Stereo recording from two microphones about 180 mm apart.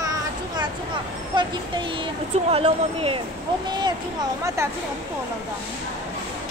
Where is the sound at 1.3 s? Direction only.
25° right (ahead or behind).